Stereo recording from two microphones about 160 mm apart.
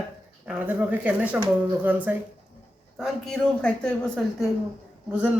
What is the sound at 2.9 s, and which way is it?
A man's voice, centre (ahead or behind).